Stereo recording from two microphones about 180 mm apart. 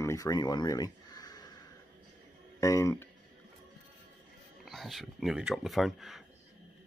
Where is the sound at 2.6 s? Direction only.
15° left (ahead or behind).